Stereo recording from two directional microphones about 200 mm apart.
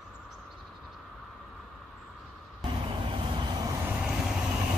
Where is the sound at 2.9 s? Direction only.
25° right (ahead or behind).